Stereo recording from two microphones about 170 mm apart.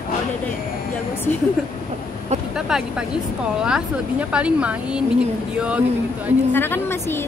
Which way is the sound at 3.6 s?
5° right (ahead or behind).